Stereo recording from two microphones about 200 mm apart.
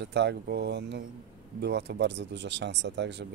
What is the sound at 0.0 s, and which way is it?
Speech, 60° right (ahead or behind).